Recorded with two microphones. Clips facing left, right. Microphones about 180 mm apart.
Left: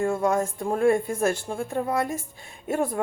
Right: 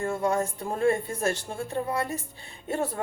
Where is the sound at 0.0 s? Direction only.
35° left (ahead or behind).